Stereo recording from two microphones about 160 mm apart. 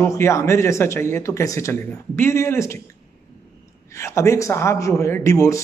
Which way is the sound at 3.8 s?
20° left (ahead or behind).